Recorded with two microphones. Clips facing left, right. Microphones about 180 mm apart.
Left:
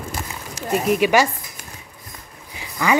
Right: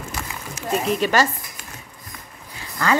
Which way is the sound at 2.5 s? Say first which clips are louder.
Left 2 dB; 15° left (ahead or behind).